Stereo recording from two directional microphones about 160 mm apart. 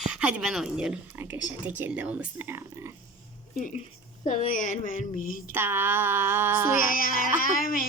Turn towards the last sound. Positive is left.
turn(degrees=60)  # may be behind; listen again after turning